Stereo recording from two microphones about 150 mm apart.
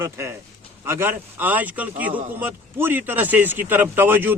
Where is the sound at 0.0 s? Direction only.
15° right (ahead or behind).